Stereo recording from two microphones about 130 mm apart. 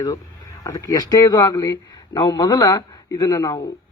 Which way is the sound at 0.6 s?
25° left (ahead or behind).